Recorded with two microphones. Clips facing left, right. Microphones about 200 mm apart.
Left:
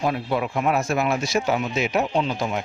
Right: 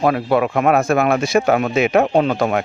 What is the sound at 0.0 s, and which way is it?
Speech, 65° right (ahead or behind).